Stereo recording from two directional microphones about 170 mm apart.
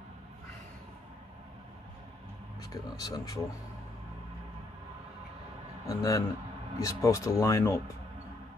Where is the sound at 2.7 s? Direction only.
20° left (ahead or behind).